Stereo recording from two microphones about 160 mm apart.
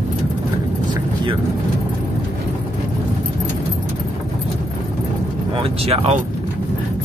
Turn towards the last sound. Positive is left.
turn(degrees=-35)  # may be behind; listen again after turning